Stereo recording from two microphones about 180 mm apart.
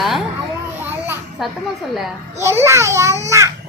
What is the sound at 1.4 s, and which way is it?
Speech, centre (ahead or behind).